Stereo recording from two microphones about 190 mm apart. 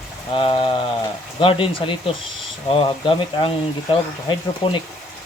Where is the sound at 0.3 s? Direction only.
25° left (ahead or behind).